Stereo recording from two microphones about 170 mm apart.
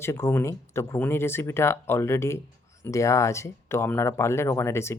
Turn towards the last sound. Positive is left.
turn(degrees=15)  # may be behind; listen again after turning